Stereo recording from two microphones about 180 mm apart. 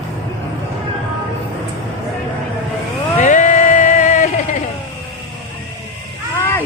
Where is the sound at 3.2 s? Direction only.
45° left (ahead or behind).